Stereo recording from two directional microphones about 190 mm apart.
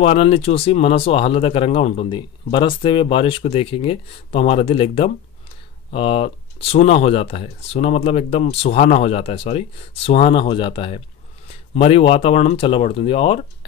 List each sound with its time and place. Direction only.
0.0 s speech: 30° left (ahead or behind)